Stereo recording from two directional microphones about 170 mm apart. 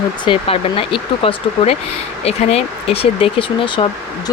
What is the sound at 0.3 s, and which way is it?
Speech, 35° left (ahead or behind).